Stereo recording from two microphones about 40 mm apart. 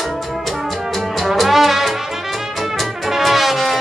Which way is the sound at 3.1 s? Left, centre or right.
Centre.